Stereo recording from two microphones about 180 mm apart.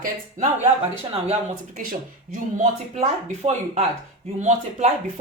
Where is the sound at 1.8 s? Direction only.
50° right (ahead or behind).